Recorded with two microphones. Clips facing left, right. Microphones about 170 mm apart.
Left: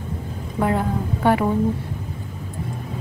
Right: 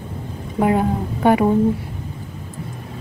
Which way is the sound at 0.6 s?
20° right (ahead or behind).